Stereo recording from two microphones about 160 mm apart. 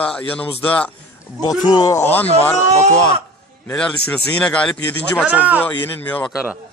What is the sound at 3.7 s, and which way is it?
Speech, 5° left (ahead or behind).